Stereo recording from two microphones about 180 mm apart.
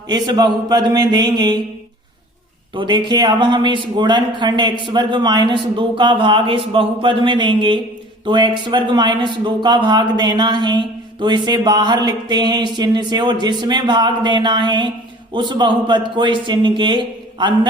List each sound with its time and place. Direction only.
0.1 s speech: 25° right (ahead or behind)
2.7 s speech: 25° right (ahead or behind)